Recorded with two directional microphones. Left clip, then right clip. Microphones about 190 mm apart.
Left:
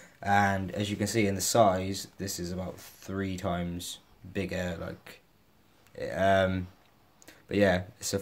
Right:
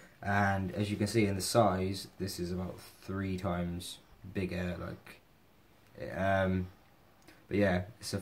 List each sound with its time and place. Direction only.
0.2 s speech: 35° left (ahead or behind)